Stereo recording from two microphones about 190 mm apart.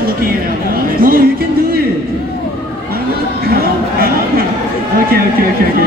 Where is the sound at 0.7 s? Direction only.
50° right (ahead or behind).